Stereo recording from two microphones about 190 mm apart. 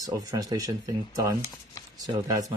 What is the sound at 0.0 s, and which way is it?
Speech, 20° right (ahead or behind).